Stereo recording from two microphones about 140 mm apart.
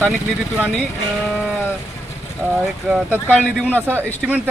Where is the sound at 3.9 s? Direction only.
15° right (ahead or behind).